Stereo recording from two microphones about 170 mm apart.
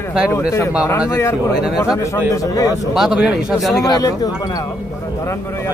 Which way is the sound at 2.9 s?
5° right (ahead or behind).